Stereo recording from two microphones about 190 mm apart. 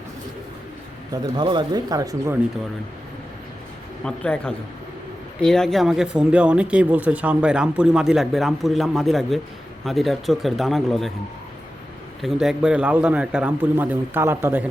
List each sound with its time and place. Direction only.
1.1 s speech: 25° right (ahead or behind)
4.0 s speech: 5° left (ahead or behind)
12.2 s a man's voice: centre (ahead or behind)